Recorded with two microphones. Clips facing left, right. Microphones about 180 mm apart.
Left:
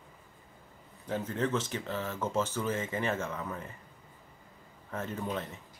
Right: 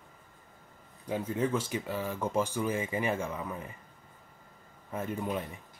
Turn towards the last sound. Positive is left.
turn(degrees=-10)  # may be behind; listen again after turning